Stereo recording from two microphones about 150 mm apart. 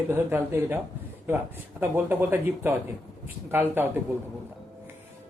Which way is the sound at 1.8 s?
15° right (ahead or behind).